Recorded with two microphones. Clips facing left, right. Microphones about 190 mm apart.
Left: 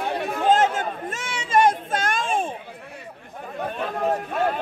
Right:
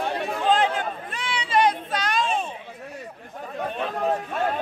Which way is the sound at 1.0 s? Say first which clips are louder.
Even; 45° left (ahead or behind).